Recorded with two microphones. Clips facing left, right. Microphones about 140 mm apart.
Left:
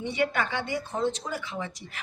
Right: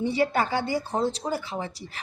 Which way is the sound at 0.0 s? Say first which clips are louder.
Right 4 dB; 35° right (ahead or behind).